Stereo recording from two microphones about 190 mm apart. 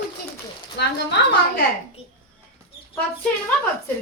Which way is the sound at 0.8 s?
65° left (ahead or behind).